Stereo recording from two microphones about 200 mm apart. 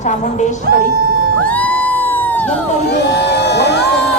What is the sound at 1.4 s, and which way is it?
Crowd, 5° left (ahead or behind).